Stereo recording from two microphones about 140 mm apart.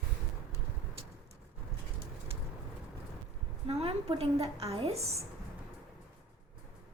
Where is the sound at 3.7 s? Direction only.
45° right (ahead or behind).